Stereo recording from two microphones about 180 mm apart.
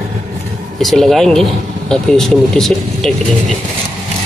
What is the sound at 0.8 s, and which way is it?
Speech, centre (ahead or behind).